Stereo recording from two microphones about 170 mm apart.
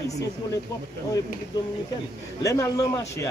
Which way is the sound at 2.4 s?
20° left (ahead or behind).